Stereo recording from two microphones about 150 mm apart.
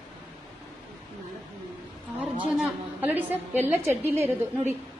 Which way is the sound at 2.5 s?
10° right (ahead or behind).